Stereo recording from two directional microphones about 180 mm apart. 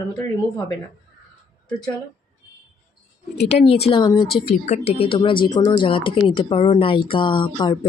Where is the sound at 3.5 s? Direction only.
35° left (ahead or behind).